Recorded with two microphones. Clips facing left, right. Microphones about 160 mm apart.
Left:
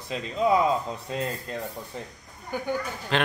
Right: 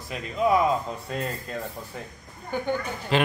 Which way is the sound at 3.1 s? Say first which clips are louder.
Right 3 dB; 5° right (ahead or behind).